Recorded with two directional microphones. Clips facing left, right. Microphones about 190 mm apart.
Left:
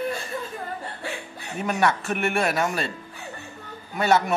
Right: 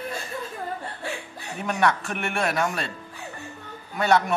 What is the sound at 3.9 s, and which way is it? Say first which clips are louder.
Speech: even; 5° left (ahead or behind).